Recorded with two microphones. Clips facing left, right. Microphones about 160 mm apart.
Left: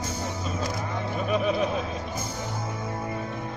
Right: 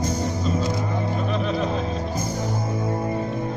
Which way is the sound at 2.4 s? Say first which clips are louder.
Right 6 dB; 35° right (ahead or behind).